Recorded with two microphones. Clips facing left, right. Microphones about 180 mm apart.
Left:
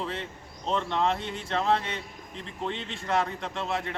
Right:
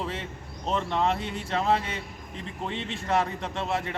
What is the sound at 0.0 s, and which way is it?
Speech, 5° right (ahead or behind).